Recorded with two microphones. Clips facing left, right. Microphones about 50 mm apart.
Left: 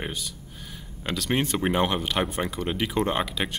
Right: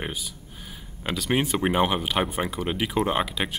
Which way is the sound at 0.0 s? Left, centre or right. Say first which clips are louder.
Even; centre.